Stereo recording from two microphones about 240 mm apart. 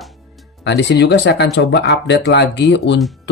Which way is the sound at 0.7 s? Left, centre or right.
Left.